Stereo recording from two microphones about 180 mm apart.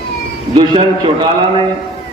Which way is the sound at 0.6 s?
25° right (ahead or behind).